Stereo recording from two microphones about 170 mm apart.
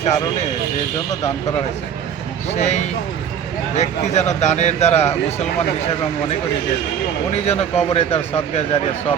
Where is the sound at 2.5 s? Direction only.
40° left (ahead or behind).